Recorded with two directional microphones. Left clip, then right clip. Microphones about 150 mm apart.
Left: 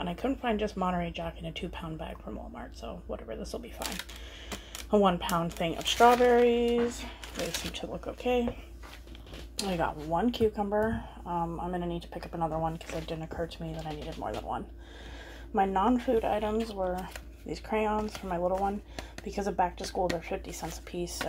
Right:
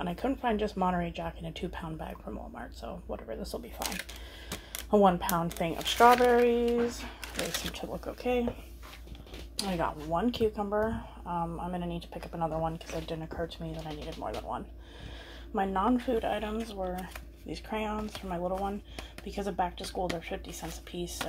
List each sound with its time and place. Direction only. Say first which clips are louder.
0.0 s speech: right 1 dB; 15° right (ahead or behind)
4.9 s speech: right 1 dB; 15° right (ahead or behind)
7.3 s speech: even; 5° right (ahead or behind)
9.6 s speech: left 1 dB; 5° left (ahead or behind)
20.9 s speech: left 2 dB; 90° left